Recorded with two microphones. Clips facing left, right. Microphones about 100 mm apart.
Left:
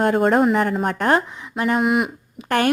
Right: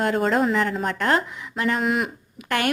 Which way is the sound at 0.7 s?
40° left (ahead or behind).